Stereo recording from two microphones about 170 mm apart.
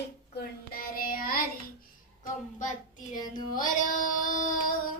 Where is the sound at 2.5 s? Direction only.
50° left (ahead or behind).